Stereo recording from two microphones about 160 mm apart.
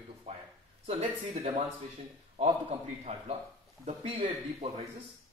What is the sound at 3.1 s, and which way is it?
A man's voice, 35° right (ahead or behind).